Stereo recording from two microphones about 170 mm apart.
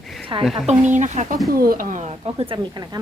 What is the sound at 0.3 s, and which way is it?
Speech, 25° right (ahead or behind).